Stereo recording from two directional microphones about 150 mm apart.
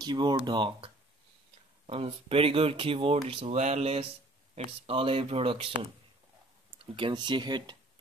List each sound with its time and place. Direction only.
0.0 s speech: 30° right (ahead or behind)
3.4 s speech: 50° right (ahead or behind)
7.0 s speech: 30° right (ahead or behind)